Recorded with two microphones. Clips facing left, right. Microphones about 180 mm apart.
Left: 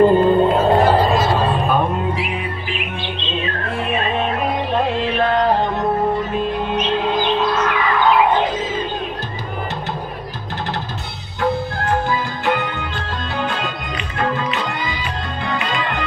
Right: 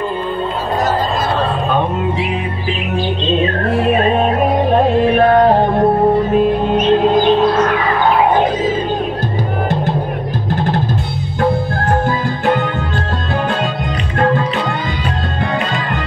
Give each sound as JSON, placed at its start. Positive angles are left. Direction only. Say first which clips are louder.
{"t": 0.0, "sound": "music", "louder": "left 9 dB", "side_deg": 40}
{"t": 3.9, "sound": "music", "louder": "right 5 dB", "side_deg": -45}